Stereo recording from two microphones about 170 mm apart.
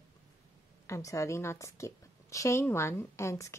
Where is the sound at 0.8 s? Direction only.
20° left (ahead or behind).